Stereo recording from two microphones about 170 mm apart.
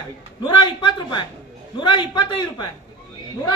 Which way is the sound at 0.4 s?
30° left (ahead or behind).